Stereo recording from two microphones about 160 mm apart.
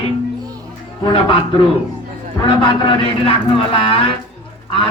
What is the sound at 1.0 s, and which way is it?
A man's voice, 30° left (ahead or behind).